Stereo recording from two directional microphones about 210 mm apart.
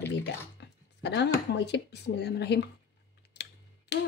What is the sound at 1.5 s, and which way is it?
Speech, 55° left (ahead or behind).